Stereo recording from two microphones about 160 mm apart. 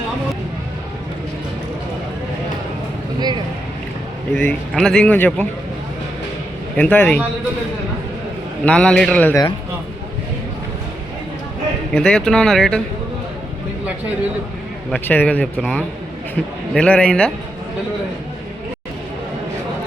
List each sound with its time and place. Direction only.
3.2 s a sound: 25° right (ahead or behind)
4.3 s speech: 5° left (ahead or behind)
6.7 s speech: 10° left (ahead or behind)
8.6 s speech: 5° left (ahead or behind)
11.9 s speech: 5° left (ahead or behind)
14.8 s speech: 10° left (ahead or behind)